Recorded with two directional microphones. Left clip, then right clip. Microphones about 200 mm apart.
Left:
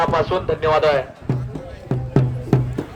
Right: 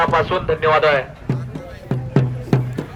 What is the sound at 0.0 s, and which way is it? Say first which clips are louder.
A man's voice: right 2 dB; 15° left (ahead or behind).